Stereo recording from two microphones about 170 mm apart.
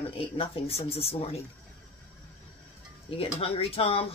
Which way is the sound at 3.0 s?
35° left (ahead or behind).